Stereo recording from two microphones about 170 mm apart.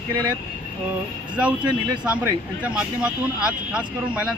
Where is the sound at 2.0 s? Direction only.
5° right (ahead or behind).